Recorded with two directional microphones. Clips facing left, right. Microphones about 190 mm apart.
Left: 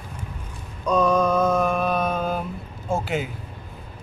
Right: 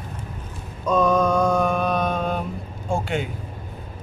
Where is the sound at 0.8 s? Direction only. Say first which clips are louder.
Right 1 dB; centre (ahead or behind).